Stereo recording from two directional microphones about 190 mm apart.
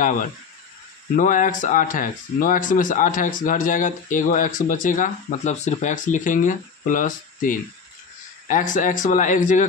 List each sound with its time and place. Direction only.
1.1 s speech: 45° left (ahead or behind)